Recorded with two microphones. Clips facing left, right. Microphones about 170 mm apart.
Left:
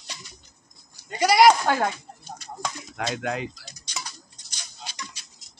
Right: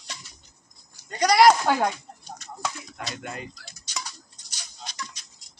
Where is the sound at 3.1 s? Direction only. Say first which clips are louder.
Left 7 dB; 90° left.